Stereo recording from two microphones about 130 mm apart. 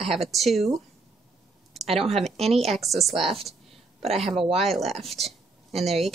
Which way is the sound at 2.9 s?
Centre (ahead or behind).